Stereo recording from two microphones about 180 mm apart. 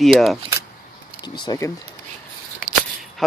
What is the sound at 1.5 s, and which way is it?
Speech, 15° left (ahead or behind).